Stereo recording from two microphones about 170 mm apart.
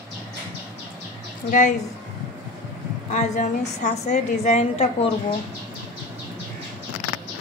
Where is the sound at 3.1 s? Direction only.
45° left (ahead or behind).